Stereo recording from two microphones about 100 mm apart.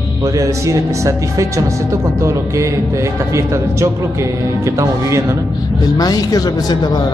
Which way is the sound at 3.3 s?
30° right (ahead or behind).